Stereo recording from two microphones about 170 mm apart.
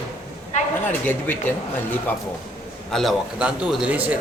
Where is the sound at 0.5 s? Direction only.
45° left (ahead or behind).